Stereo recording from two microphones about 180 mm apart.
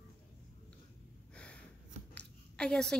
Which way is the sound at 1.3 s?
5° left (ahead or behind).